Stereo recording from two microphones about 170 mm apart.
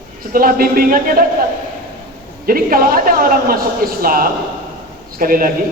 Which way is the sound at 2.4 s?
60° right (ahead or behind).